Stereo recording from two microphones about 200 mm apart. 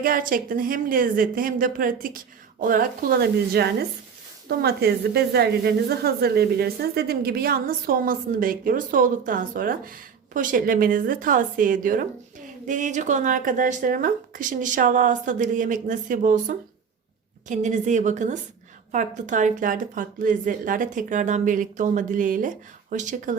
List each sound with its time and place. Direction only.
0.0 s a woman's voice: 45° right (ahead or behind)